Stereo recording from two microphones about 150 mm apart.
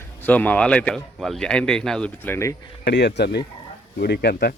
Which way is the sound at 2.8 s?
90° left.